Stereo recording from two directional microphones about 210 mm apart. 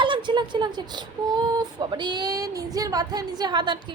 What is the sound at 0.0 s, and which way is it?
Speech, 25° right (ahead or behind).